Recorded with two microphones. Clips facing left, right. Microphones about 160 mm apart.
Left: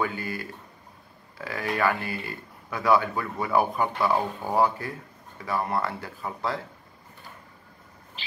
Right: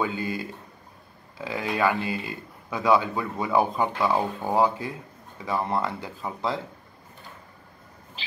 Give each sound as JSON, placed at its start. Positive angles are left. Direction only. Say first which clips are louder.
{"t": 0.0, "sound": "a man's voice", "louder": "right 2 dB", "side_deg": -20}